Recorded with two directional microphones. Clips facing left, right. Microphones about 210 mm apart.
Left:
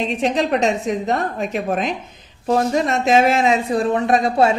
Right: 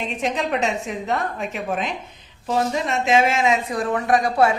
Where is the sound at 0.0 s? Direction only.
35° left (ahead or behind).